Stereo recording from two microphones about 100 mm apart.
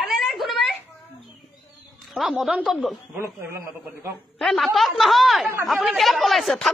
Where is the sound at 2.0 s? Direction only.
Centre (ahead or behind).